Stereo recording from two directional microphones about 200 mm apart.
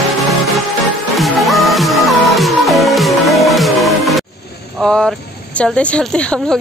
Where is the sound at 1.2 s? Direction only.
Centre (ahead or behind).